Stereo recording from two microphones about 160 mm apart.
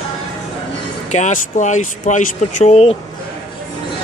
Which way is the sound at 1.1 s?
50° left (ahead or behind).